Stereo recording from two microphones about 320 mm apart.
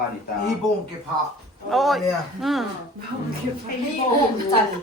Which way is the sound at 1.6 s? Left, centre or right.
Centre.